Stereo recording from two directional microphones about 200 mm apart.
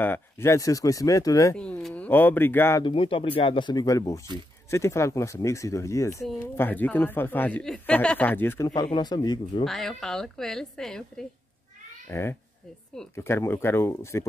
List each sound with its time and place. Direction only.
0.0 s speech: 10° left (ahead or behind)
1.6 s speech: 5° left (ahead or behind)
2.8 s speech: 25° left (ahead or behind)
9.7 s a woman's voice: centre (ahead or behind)